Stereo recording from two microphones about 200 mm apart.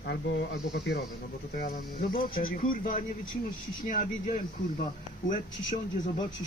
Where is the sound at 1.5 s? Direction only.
45° left (ahead or behind).